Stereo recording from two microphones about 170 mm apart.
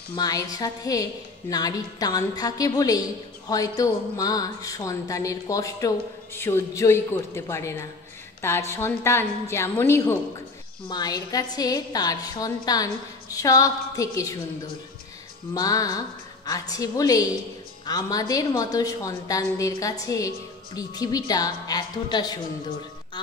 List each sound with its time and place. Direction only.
0.1 s a woman's voice: 20° left (ahead or behind)
15.5 s a woman's voice: 20° left (ahead or behind)
23.2 s music: 25° left (ahead or behind)